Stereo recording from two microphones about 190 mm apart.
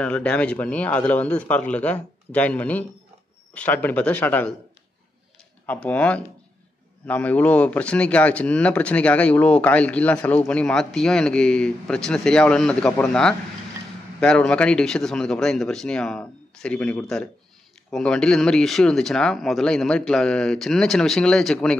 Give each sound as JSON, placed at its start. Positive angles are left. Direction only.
{"t": 0.0, "sound": "speech", "side_deg": 5}
{"t": 5.7, "sound": "speech", "side_deg": 10}